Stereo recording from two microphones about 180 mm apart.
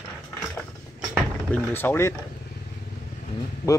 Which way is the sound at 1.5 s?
10° left (ahead or behind).